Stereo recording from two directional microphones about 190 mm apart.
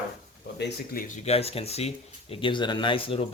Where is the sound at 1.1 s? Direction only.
35° left (ahead or behind).